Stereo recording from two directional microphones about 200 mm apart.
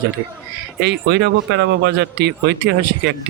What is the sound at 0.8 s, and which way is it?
Speech, 55° right (ahead or behind).